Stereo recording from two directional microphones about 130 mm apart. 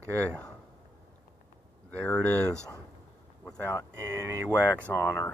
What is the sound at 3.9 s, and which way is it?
Speech, 20° right (ahead or behind).